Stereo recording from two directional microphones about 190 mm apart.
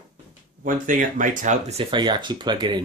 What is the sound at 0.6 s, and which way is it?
Speech, 45° right (ahead or behind).